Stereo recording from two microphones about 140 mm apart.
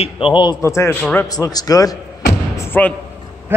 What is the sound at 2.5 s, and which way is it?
Thump, 15° left (ahead or behind).